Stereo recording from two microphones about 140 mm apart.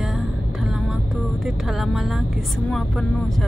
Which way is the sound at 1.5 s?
Centre (ahead or behind).